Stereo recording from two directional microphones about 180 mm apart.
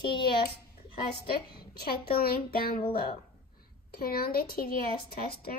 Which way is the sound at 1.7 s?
60° left (ahead or behind).